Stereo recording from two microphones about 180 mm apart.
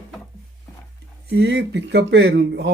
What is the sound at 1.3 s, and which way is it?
Speech, 65° right (ahead or behind).